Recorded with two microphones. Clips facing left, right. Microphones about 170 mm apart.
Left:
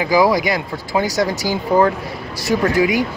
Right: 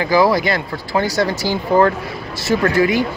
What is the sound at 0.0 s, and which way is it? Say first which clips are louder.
Speech: even; 15° left (ahead or behind).